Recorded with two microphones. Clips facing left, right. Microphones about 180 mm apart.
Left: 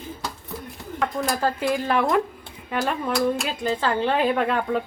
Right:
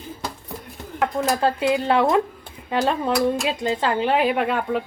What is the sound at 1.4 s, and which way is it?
Speech, 20° right (ahead or behind).